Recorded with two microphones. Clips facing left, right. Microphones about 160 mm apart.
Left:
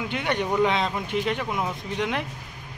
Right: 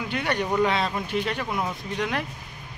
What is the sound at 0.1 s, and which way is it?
Speech, 20° left (ahead or behind).